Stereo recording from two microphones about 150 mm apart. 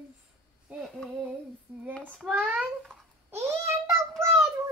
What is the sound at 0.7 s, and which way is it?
Female singing, centre (ahead or behind).